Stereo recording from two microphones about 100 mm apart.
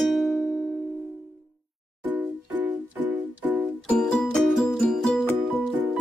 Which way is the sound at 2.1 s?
15° right (ahead or behind).